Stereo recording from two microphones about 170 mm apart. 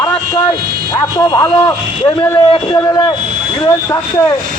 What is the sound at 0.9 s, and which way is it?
Speech, 25° left (ahead or behind).